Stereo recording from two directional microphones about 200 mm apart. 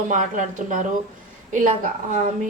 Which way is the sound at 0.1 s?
40° right (ahead or behind).